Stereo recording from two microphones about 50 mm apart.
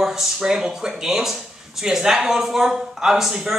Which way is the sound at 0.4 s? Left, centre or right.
Centre.